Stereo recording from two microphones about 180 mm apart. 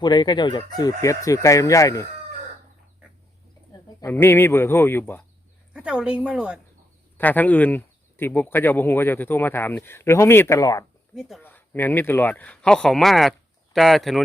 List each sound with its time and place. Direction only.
0.0 s speech: 25° left (ahead or behind)
3.7 s speech: 15° left (ahead or behind)
5.7 s speech: 5° right (ahead or behind)
7.2 s speech: 10° left (ahead or behind)
11.1 s speech: centre (ahead or behind)
11.4 s speech: 10° left (ahead or behind)